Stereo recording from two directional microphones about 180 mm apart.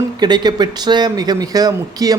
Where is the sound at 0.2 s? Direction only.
25° right (ahead or behind).